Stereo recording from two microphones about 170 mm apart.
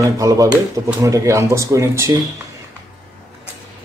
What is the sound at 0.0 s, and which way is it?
Speech, 20° right (ahead or behind).